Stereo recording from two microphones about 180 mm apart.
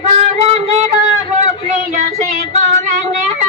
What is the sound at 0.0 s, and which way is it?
Music, 35° right (ahead or behind).